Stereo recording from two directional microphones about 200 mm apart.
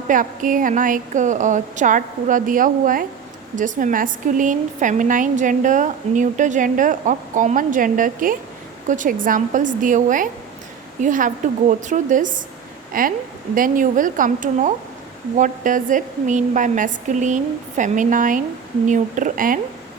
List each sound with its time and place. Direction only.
0.1 s a woman's voice: 40° right (ahead or behind)